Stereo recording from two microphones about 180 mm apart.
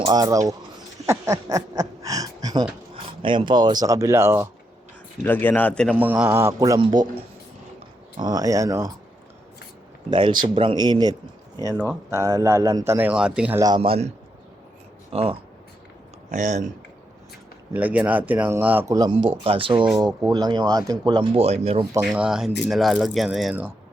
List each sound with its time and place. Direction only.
0.0 s speech: 20° right (ahead or behind)
1.0 s a sound: 15° right (ahead or behind)
2.9 s speech: 25° right (ahead or behind)
5.2 s speech: 10° left (ahead or behind)
5.9 s speech: 10° right (ahead or behind); by 7.1 s 25° right (ahead or behind)
8.1 s speech: 20° right (ahead or behind)
10.1 s speech: 25° right (ahead or behind); by 13.6 s 5° right (ahead or behind)
13.6 s speech: 25° right (ahead or behind)
15.1 s speech: 30° right (ahead or behind)
16.3 s speech: 40° right (ahead or behind)
17.7 s speech: 10° right (ahead or behind); by 21.8 s 30° right (ahead or behind)
22.0 s speech: 5° right (ahead or behind)